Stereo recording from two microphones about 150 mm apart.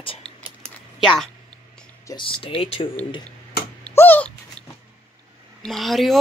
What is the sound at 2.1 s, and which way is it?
Speech, 35° left (ahead or behind).